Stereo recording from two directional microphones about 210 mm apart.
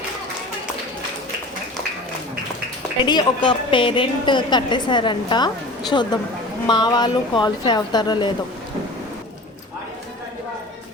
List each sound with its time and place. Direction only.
3.0 s a woman's voice: 20° left (ahead or behind)